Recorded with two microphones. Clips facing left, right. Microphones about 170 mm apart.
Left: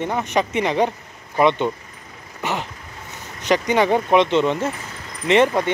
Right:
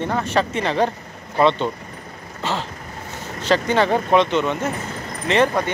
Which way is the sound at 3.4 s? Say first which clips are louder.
Even; 15° left (ahead or behind).